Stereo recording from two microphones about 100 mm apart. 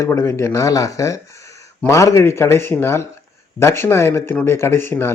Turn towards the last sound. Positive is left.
turn(degrees=25)  # may be behind; listen again after turning